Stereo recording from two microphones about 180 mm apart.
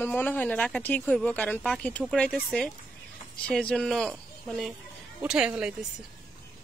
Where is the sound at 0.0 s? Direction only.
10° left (ahead or behind).